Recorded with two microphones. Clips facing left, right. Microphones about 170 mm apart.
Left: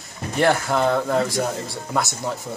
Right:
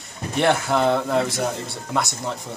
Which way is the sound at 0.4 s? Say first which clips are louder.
Even; centre (ahead or behind).